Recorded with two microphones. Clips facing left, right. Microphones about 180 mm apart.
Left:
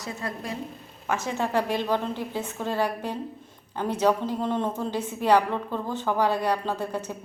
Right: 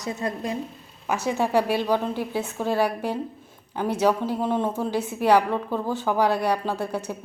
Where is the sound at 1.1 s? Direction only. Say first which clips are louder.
Right 3 dB; 10° right (ahead or behind).